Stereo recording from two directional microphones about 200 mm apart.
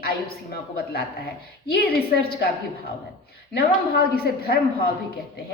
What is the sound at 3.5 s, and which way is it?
A woman's voice, 50° left (ahead or behind).